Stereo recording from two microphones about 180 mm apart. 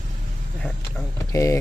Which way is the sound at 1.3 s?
15° left (ahead or behind).